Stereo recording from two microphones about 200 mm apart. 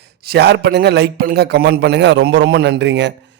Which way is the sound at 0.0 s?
55° right (ahead or behind).